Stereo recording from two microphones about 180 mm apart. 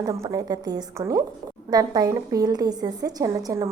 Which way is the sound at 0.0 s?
15° right (ahead or behind).